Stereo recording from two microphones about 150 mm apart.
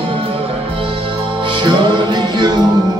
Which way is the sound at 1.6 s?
30° right (ahead or behind).